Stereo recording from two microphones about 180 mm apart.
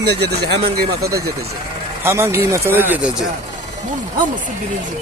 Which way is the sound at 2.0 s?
15° right (ahead or behind).